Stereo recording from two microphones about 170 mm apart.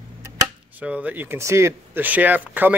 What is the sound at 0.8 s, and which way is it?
Speech, 10° right (ahead or behind).